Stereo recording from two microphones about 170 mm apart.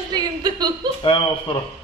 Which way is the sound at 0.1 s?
25° right (ahead or behind).